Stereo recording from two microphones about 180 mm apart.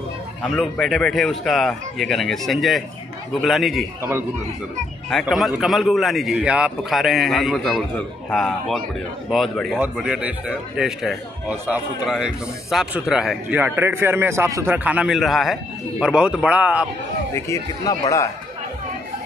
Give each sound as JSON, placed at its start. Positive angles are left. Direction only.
{"t": 0.4, "sound": "a man's voice", "side_deg": 0}
{"t": 5.2, "sound": "a man's voice", "side_deg": 0}
{"t": 17.3, "sound": "speech", "side_deg": 15}